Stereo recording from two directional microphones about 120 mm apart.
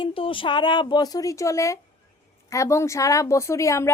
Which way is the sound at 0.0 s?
45° left (ahead or behind).